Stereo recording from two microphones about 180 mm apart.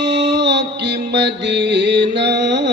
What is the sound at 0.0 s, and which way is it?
Music, 75° right (ahead or behind).